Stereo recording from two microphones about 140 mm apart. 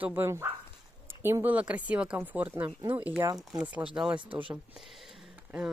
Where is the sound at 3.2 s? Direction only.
25° right (ahead or behind).